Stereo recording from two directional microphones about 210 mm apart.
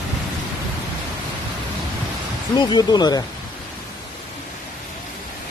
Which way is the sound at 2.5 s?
20° left (ahead or behind).